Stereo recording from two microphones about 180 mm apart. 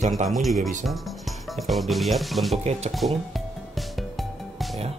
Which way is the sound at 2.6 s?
35° right (ahead or behind).